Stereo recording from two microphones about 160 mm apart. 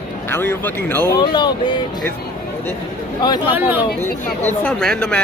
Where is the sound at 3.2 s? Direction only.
25° left (ahead or behind).